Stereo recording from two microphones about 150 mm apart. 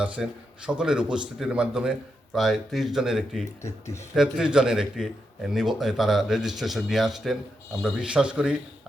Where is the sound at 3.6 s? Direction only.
20° left (ahead or behind).